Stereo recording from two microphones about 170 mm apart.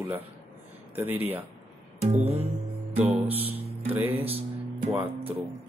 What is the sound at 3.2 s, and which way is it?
Speech, 10° right (ahead or behind).